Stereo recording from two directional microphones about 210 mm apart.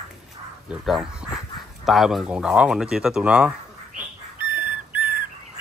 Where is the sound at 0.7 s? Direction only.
5° right (ahead or behind).